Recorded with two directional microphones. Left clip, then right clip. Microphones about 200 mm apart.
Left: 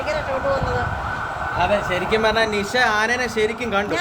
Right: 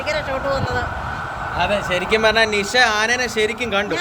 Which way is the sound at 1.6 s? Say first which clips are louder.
Right 1 dB; 35° right (ahead or behind).